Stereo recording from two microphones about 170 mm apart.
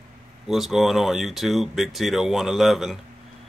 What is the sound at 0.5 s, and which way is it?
Speech, centre (ahead or behind).